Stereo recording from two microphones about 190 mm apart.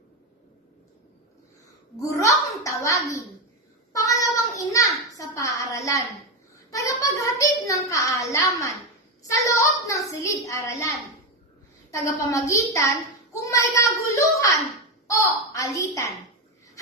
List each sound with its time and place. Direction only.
2.0 s a child's voice: 15° left (ahead or behind)
12.3 s a child's voice: 15° left (ahead or behind)